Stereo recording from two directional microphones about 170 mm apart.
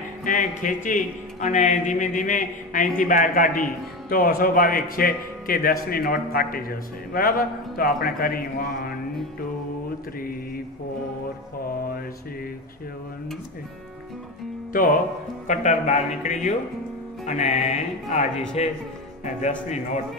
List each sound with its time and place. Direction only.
0.2 s a man's voice: 50° left (ahead or behind)
14.7 s speech: 55° left (ahead or behind)